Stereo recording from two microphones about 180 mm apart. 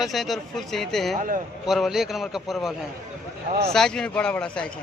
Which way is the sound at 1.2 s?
50° right (ahead or behind).